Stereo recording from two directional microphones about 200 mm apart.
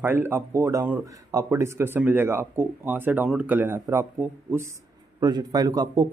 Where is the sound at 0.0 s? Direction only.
10° right (ahead or behind).